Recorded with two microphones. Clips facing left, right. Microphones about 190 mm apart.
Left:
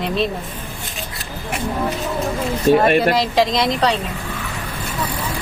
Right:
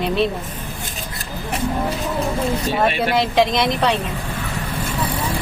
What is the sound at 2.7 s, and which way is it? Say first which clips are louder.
Speech: left 9 dB; 50° left (ahead or behind).